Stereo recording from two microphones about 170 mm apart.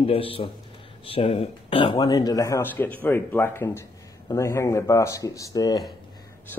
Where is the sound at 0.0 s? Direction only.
35° left (ahead or behind).